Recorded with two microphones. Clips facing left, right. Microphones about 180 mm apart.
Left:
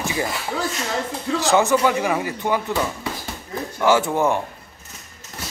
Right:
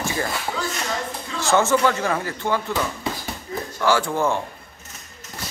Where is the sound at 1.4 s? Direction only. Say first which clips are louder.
Left 1 dB; 15° left (ahead or behind).